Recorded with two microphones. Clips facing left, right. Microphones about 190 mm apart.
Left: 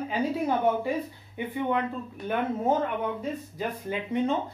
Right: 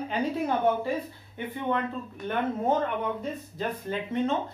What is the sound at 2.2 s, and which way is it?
Speech, 5° left (ahead or behind).